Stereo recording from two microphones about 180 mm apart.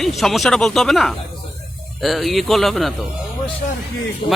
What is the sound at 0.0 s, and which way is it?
Speech, centre (ahead or behind).